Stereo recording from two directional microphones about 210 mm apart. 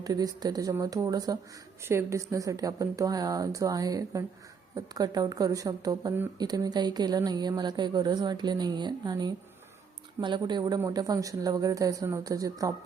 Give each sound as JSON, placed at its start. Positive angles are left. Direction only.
{"t": 0.0, "sound": "speech", "side_deg": -20}